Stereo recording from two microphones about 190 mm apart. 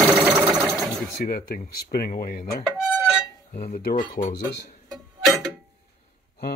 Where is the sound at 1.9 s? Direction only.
50° left (ahead or behind).